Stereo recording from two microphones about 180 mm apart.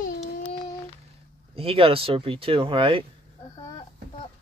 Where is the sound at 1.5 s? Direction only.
30° right (ahead or behind).